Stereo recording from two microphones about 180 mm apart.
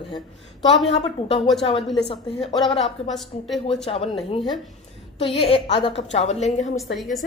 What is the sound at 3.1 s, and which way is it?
Speech, centre (ahead or behind).